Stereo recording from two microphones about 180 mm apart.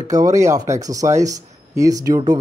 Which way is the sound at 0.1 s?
20° right (ahead or behind).